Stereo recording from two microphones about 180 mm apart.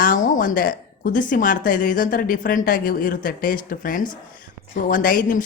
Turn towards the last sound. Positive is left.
turn(degrees=50)  # may be behind; listen again after turning